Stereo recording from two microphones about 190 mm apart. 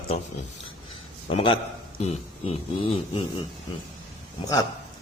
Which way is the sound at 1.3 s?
30° left (ahead or behind).